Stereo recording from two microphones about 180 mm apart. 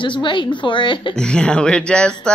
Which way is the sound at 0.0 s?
25° left (ahead or behind).